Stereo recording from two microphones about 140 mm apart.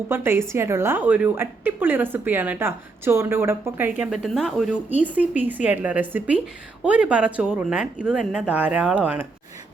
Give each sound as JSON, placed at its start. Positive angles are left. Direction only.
{"t": 0.1, "sound": "a woman's voice", "side_deg": -15}
{"t": 4.1, "sound": "speech", "side_deg": 0}
{"t": 4.9, "sound": "a woman's voice", "side_deg": -10}